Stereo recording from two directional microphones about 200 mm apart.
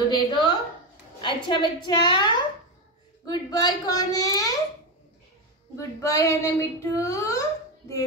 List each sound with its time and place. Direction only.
0.1 s a sound: 20° left (ahead or behind)
1.2 s a woman's voice: 20° left (ahead or behind)
5.8 s a child's voice: 15° left (ahead or behind)